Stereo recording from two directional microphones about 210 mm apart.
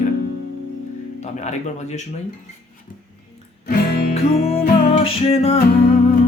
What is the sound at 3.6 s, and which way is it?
Music, 35° left (ahead or behind).